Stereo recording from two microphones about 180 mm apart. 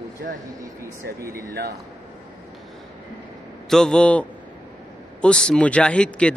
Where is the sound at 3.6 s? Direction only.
5° left (ahead or behind).